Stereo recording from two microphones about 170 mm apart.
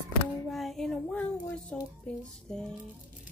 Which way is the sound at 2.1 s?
5° left (ahead or behind).